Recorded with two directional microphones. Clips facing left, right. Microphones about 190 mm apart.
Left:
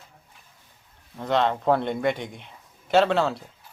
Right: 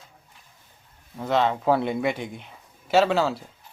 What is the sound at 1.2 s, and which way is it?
Speech, 5° right (ahead or behind).